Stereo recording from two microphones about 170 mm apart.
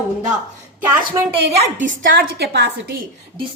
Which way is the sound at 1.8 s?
50° right (ahead or behind).